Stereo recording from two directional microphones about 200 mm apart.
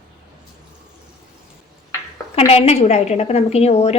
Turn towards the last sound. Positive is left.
turn(degrees=30)  # may be behind; listen again after turning